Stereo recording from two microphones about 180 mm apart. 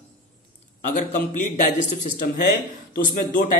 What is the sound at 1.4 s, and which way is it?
Speech, 45° left (ahead or behind).